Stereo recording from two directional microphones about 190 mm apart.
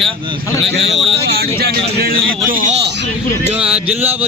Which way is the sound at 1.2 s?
55° right (ahead or behind).